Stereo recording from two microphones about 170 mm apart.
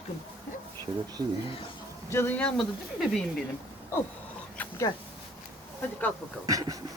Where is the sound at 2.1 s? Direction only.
10° left (ahead or behind).